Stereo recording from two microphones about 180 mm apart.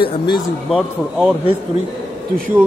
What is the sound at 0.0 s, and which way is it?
Speech, 30° left (ahead or behind).